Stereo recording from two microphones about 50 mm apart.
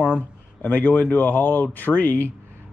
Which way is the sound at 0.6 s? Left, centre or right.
Left.